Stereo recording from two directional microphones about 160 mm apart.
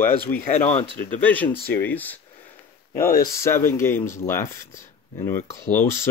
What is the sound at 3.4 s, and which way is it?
Speech, 15° left (ahead or behind).